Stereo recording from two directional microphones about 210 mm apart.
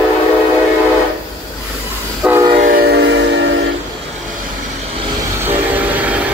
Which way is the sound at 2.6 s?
45° right (ahead or behind).